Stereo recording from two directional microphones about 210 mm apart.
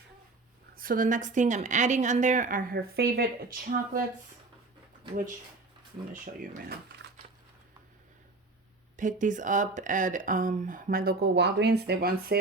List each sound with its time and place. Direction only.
0.8 s speech: 40° right (ahead or behind)
6.4 s speech: 40° right (ahead or behind)
9.0 s speech: 35° right (ahead or behind)